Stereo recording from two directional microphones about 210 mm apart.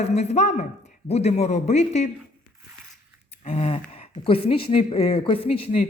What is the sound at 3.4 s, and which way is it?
Speech, 30° left (ahead or behind).